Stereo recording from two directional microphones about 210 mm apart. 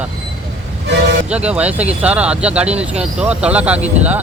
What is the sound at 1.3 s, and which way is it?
Speech, 5° right (ahead or behind).